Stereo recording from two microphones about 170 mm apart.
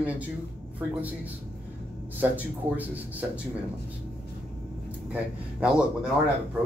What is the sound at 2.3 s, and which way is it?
Speech, 10° right (ahead or behind).